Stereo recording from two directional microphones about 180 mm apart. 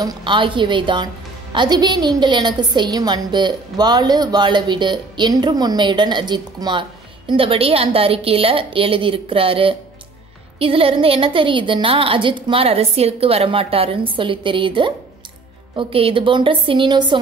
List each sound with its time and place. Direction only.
0.0 s a woman's voice: 25° right (ahead or behind)